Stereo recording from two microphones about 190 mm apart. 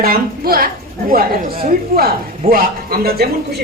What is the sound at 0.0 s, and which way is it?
Speech, 50° right (ahead or behind).